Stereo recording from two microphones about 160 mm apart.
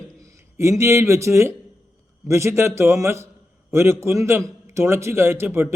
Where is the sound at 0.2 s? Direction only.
20° right (ahead or behind).